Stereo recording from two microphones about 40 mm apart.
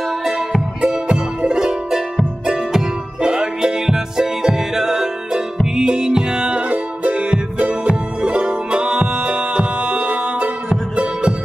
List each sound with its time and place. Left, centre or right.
0.7 s music: right
6.7 s music: right
7.8 s music: right